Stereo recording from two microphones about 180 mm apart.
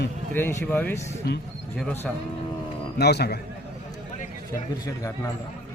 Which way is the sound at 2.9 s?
65° left (ahead or behind).